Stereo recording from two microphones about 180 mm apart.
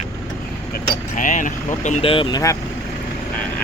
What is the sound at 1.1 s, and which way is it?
Speech, 45° left (ahead or behind).